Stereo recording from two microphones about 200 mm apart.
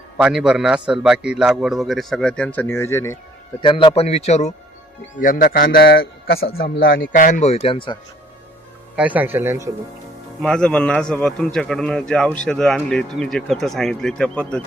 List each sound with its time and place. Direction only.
0.2 s speech: 5° right (ahead or behind); by 3.2 s 10° left (ahead or behind)
3.6 s a man's voice: 25° left (ahead or behind)
9.0 s a man's voice: 10° right (ahead or behind)
10.4 s speech: 5° left (ahead or behind)